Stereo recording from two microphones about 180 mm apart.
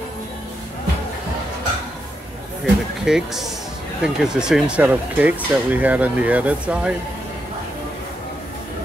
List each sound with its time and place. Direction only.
2.6 s speech: centre (ahead or behind)